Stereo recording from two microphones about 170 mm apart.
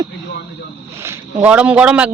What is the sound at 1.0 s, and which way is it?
Speech, 15° right (ahead or behind).